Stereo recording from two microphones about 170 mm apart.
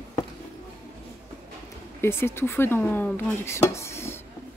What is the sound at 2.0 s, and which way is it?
Speech, 15° left (ahead or behind).